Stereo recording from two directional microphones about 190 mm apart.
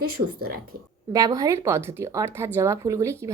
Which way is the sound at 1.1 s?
20° right (ahead or behind).